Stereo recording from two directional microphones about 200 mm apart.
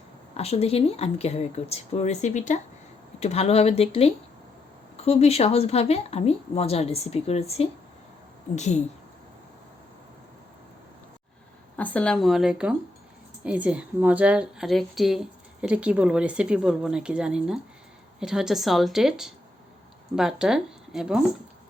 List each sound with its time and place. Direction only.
0.3 s speech: 30° left (ahead or behind)
11.8 s a woman's voice: 5° left (ahead or behind)